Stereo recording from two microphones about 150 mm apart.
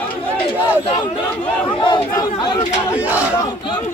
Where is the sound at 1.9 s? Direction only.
30° left (ahead or behind).